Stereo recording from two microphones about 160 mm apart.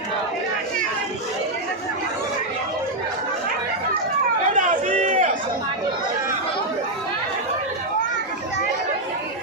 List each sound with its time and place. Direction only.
4.5 s run: 55° right (ahead or behind)